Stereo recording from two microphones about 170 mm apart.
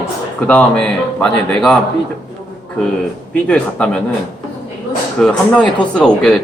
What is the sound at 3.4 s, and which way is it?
Speech, 5° left (ahead or behind).